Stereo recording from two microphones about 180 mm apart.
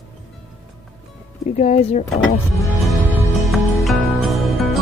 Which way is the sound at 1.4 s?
40° left (ahead or behind).